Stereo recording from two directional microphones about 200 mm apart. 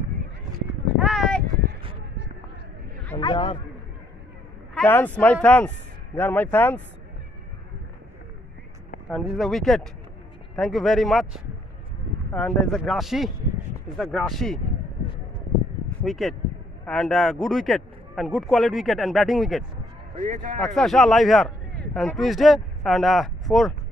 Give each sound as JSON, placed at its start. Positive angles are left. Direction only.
{"t": 0.9, "sound": "a sound", "side_deg": 0}
{"t": 3.2, "sound": "a man's voice", "side_deg": 25}
{"t": 4.7, "sound": "speech", "side_deg": 10}
{"t": 9.1, "sound": "speech", "side_deg": 0}
{"t": 16.0, "sound": "speech", "side_deg": 0}
{"t": 20.2, "sound": "a man's voice", "side_deg": -40}
{"t": 20.6, "sound": "speech", "side_deg": 0}